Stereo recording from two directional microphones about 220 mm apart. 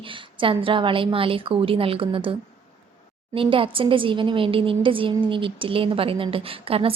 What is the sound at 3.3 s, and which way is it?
A woman's voice, 25° right (ahead or behind).